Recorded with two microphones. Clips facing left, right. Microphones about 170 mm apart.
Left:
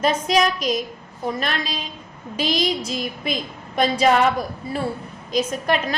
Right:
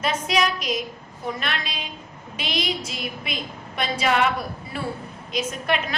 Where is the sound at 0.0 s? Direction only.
40° left (ahead or behind).